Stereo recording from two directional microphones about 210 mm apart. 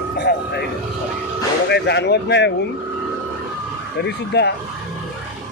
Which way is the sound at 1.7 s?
55° left (ahead or behind).